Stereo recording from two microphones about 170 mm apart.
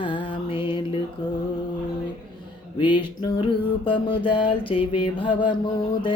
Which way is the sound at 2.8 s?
25° left (ahead or behind).